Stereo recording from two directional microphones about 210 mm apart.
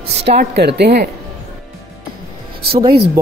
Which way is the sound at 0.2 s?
50° right (ahead or behind).